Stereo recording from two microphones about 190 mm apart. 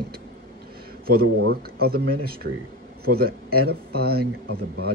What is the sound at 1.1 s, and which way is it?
Speech, 55° right (ahead or behind).